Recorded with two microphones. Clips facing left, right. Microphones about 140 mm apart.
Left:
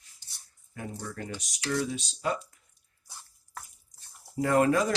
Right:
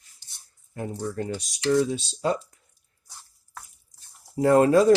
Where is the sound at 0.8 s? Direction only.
30° right (ahead or behind).